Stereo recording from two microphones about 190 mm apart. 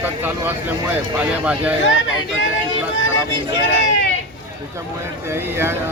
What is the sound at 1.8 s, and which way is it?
Speech, 80° left.